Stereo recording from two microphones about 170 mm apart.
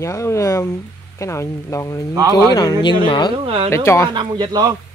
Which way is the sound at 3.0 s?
30° left (ahead or behind).